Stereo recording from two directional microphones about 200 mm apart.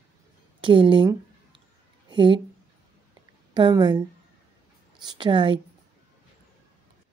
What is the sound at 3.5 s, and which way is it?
A woman's voice, 20° right (ahead or behind).